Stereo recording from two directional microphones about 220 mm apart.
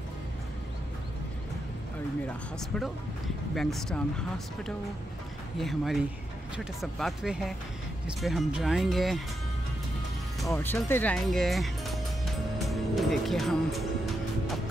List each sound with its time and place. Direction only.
3.5 s speech: centre (ahead or behind)
5.6 s speech: centre (ahead or behind)
10.5 s speech: 10° left (ahead or behind)
12.5 s music: centre (ahead or behind)